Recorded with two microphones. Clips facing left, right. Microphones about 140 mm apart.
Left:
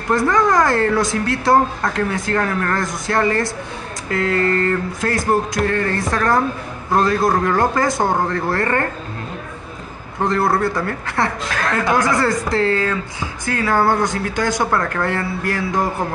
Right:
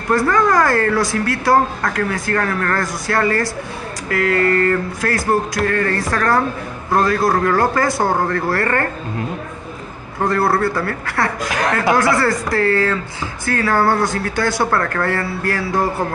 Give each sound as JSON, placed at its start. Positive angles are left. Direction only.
{"t": 0.1, "sound": "speech", "side_deg": 20}
{"t": 10.2, "sound": "speech", "side_deg": 20}